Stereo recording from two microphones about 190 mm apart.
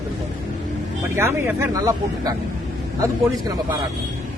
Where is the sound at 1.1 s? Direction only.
10° right (ahead or behind).